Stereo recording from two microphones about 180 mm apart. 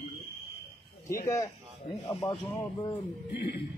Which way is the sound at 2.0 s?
15° left (ahead or behind).